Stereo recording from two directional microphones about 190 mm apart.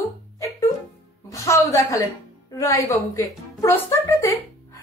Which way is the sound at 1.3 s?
15° left (ahead or behind).